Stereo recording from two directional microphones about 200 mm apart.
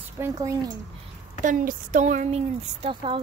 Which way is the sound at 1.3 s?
40° right (ahead or behind).